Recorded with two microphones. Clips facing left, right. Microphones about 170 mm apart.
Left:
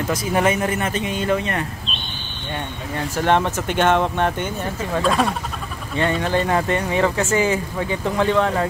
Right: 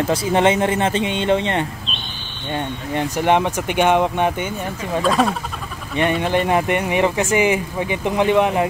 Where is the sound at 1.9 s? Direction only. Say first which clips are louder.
Even; centre (ahead or behind).